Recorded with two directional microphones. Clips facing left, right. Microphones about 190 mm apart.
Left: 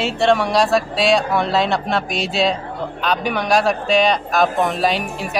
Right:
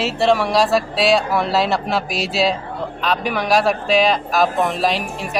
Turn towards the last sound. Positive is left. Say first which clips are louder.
# even
turn(degrees=0)  # may be behind; listen again after turning